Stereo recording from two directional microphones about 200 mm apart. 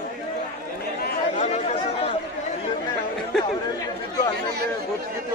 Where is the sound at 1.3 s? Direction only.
35° left (ahead or behind).